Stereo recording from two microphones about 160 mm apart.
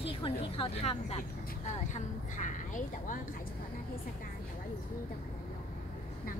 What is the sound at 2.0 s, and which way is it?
A woman's voice, 50° left (ahead or behind).